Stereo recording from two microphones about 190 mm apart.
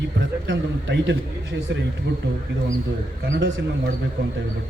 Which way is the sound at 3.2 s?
65° right (ahead or behind).